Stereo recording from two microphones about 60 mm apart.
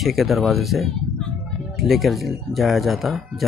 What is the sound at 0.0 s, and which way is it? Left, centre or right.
Speech, centre.